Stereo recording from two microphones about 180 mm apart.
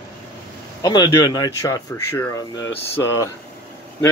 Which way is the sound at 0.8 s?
20° left (ahead or behind).